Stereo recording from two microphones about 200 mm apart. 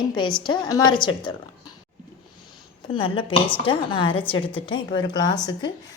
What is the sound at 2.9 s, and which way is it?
A woman's voice, 25° left (ahead or behind).